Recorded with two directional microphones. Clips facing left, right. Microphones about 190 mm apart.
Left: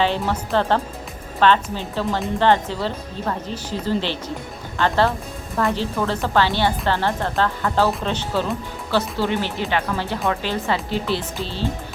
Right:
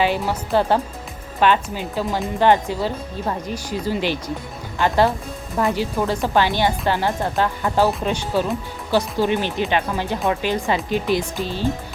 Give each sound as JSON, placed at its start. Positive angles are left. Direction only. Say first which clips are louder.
{"t": 0.0, "sound": "speech", "louder": "right 1 dB", "side_deg": -10}